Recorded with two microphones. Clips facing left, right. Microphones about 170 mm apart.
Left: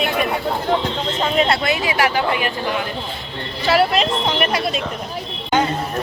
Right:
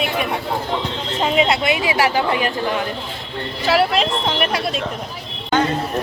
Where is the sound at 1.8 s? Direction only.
30° right (ahead or behind).